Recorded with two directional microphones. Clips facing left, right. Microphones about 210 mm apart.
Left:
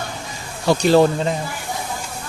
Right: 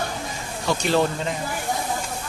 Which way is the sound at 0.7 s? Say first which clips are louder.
Left 7 dB; 35° left (ahead or behind).